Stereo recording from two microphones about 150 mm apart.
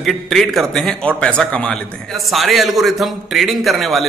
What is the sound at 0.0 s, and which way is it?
A man's voice, centre (ahead or behind).